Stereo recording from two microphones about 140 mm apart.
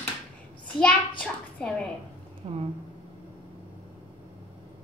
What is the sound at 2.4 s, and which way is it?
Speech, 50° right (ahead or behind).